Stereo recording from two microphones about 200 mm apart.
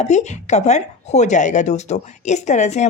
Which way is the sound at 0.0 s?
35° left (ahead or behind).